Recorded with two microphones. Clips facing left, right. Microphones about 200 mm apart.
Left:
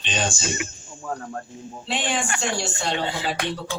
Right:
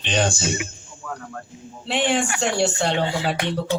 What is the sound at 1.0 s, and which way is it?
Speech, 30° left (ahead or behind).